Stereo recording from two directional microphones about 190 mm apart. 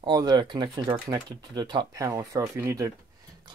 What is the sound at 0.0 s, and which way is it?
Speech, 20° right (ahead or behind).